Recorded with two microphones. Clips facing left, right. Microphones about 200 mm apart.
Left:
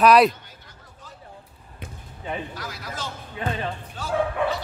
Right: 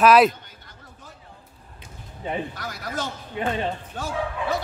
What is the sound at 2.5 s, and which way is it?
Speech, 50° right (ahead or behind).